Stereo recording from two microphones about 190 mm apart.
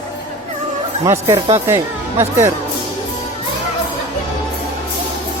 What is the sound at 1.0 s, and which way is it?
Speech, 15° right (ahead or behind).